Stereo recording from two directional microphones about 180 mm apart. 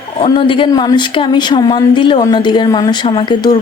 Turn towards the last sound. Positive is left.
turn(degrees=25)  # may be behind; listen again after turning